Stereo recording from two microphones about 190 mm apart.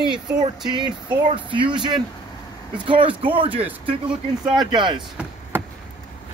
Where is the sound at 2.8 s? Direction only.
25° right (ahead or behind).